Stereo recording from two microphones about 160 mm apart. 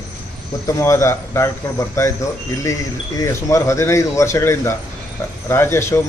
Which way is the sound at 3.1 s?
20° left (ahead or behind).